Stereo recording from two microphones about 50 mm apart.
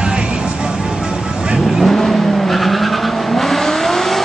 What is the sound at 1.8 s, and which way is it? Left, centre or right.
Vehicle, centre.